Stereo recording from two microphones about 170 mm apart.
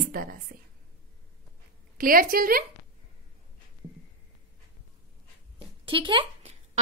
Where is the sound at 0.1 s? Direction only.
55° right (ahead or behind).